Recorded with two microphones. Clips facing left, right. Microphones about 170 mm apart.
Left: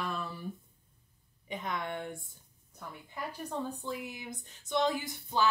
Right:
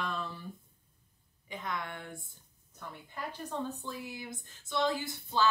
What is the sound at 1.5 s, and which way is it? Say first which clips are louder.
Speech: left 2 dB; 20° left (ahead or behind).